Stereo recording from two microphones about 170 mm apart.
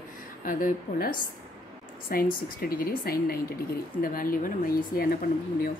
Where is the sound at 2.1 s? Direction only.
60° left (ahead or behind).